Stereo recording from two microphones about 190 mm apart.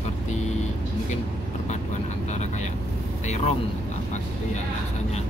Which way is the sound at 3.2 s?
35° left (ahead or behind).